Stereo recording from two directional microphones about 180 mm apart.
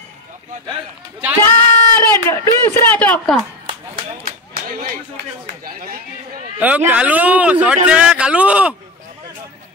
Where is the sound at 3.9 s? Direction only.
50° right (ahead or behind).